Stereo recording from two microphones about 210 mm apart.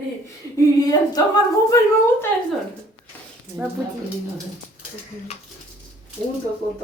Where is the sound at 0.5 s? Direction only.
15° left (ahead or behind).